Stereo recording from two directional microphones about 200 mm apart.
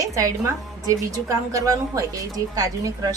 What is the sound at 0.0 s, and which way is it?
A woman's voice, 15° right (ahead or behind).